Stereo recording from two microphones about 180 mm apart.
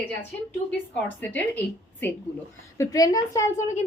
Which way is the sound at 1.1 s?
10° left (ahead or behind).